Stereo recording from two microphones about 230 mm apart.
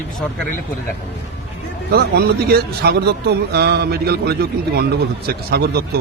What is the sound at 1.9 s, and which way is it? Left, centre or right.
Speech, right.